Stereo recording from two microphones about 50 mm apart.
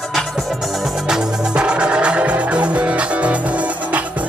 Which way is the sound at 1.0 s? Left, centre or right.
Centre.